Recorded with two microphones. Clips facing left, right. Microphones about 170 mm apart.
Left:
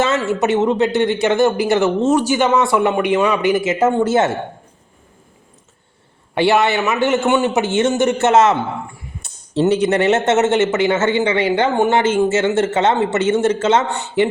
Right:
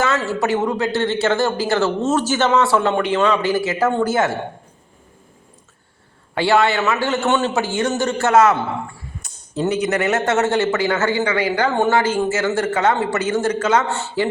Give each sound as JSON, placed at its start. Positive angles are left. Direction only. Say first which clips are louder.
{"t": 0.3, "sound": "a man's voice", "louder": "left 4 dB", "side_deg": 20}
{"t": 6.3, "sound": "a man's voice", "louder": "left 2 dB", "side_deg": 20}